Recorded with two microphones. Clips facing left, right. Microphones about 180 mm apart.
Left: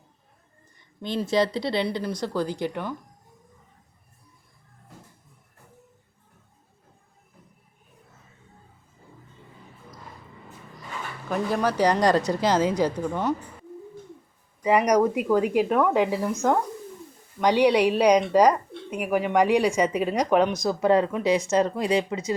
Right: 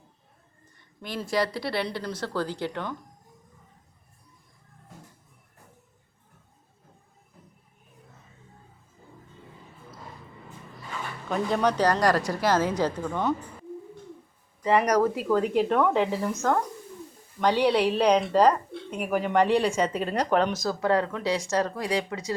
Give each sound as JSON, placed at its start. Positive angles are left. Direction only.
{"t": 1.0, "sound": "speech", "side_deg": 25}
{"t": 11.3, "sound": "speech", "side_deg": 5}
{"t": 11.9, "sound": "speech", "side_deg": 20}
{"t": 14.6, "sound": "speech", "side_deg": 10}
{"t": 17.4, "sound": "speech", "side_deg": 15}